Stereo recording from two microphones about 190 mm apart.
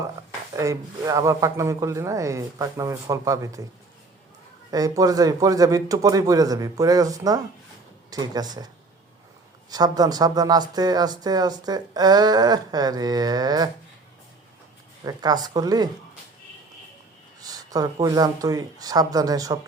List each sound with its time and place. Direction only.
0.5 s a man's voice: 15° right (ahead or behind)
4.7 s speech: 20° right (ahead or behind)
15.0 s speech: 20° right (ahead or behind)
17.4 s speech: 20° right (ahead or behind)